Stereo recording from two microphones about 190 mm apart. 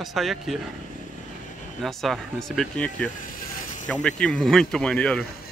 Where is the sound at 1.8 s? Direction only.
Centre (ahead or behind).